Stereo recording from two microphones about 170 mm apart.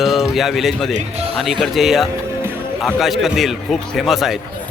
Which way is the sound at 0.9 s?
35° right (ahead or behind).